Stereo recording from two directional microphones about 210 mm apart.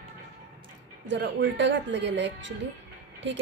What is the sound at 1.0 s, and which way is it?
A woman's voice, 60° right (ahead or behind).